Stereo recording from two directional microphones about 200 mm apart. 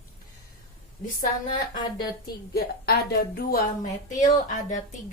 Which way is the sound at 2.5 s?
50° left (ahead or behind).